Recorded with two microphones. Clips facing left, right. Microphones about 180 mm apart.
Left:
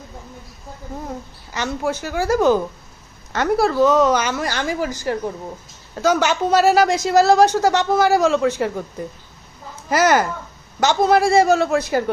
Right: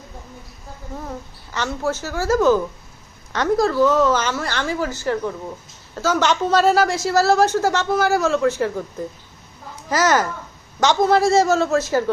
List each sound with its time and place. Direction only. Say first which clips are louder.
1.5 s a woman's voice: left 1 dB; 15° left (ahead or behind)
9.9 s a woman's voice: left 2 dB; 10° left (ahead or behind)